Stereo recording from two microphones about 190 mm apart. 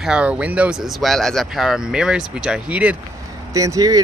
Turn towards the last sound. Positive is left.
turn(degrees=-20)  # may be behind; listen again after turning